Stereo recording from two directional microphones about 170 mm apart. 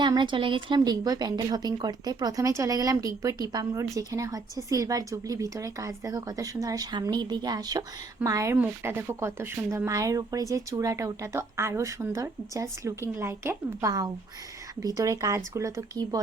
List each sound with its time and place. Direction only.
0.0 s a woman's voice: 25° right (ahead or behind)